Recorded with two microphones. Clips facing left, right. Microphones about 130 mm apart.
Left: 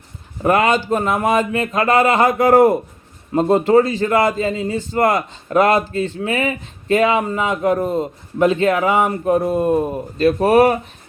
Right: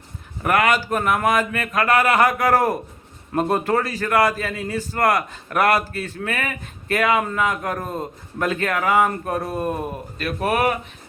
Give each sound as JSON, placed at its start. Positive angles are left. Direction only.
{"t": 0.4, "sound": "a man's voice", "side_deg": 30}